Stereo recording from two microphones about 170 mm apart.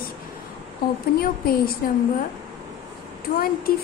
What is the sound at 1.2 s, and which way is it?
Speech, 60° left (ahead or behind).